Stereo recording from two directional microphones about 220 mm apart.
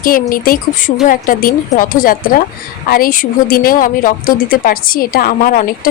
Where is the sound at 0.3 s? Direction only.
40° left (ahead or behind).